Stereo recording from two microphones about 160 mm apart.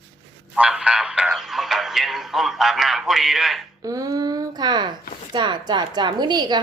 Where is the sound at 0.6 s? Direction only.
5° right (ahead or behind).